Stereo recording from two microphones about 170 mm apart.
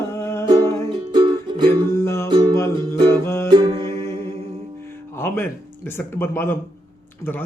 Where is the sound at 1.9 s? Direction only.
15° left (ahead or behind).